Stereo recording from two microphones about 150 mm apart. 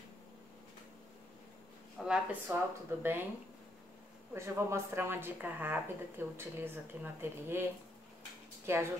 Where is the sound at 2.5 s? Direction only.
10° right (ahead or behind).